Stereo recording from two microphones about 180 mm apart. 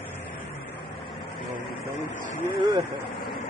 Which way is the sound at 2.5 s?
25° right (ahead or behind).